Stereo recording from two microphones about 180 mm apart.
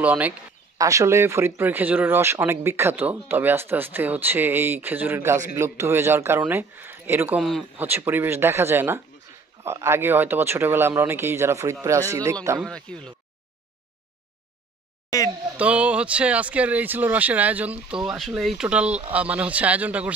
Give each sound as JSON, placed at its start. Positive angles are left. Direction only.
{"t": 0.0, "sound": "speech", "side_deg": -10}
{"t": 12.6, "sound": "speech", "side_deg": 5}
{"t": 15.0, "sound": "speech", "side_deg": 20}
{"t": 15.5, "sound": "speech", "side_deg": -5}